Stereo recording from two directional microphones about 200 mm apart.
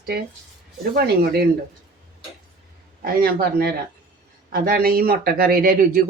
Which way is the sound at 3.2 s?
50° right (ahead or behind).